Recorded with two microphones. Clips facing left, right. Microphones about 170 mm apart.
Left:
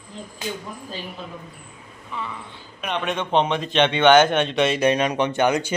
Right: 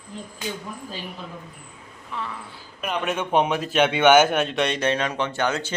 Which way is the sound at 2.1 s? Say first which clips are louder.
Even; centre (ahead or behind).